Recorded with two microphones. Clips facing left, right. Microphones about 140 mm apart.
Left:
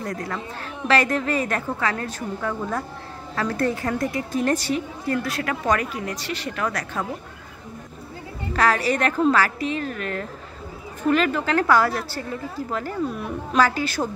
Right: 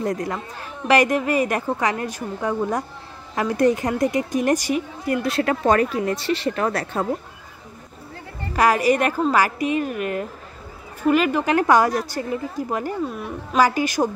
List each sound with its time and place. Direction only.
0.0 s a woman's voice: 20° right (ahead or behind)
5.3 s speech: 30° right (ahead or behind)
8.5 s a woman's voice: 15° right (ahead or behind)
13.1 s a woman's voice: centre (ahead or behind)
13.6 s a woman's voice: 15° right (ahead or behind)